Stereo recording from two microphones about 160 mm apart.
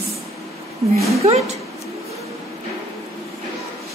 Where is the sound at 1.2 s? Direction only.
50° right (ahead or behind).